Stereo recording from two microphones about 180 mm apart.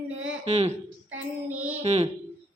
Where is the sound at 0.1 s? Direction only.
90° right.